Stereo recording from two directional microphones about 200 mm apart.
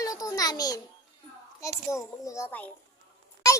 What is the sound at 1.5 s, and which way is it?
A child's voice, 15° left (ahead or behind).